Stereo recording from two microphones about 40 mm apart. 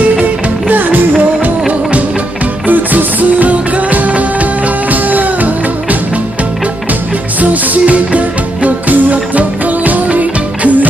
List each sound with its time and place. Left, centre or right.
0.2 s music: right
7.3 s music: right